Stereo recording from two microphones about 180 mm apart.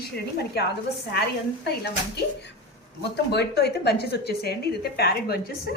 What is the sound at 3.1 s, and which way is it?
A woman's voice, 70° left (ahead or behind).